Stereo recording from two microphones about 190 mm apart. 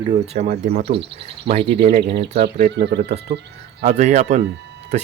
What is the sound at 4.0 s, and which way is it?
Speech, 35° right (ahead or behind).